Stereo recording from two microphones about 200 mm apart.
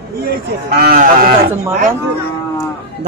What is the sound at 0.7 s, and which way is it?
Speech, 50° right (ahead or behind).